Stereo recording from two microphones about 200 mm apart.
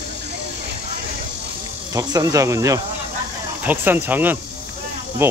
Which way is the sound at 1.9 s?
15° right (ahead or behind).